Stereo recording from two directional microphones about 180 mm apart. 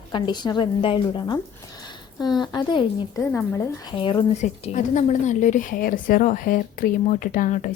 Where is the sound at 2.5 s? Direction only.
25° left (ahead or behind).